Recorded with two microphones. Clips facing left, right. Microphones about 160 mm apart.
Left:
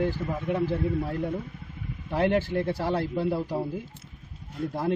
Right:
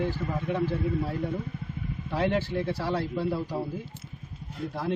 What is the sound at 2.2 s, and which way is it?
Speech, 50° left (ahead or behind).